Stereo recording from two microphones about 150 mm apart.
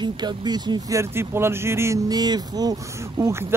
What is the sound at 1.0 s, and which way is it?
Speech, 15° right (ahead or behind).